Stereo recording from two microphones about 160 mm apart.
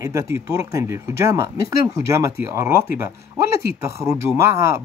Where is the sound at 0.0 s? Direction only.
20° right (ahead or behind).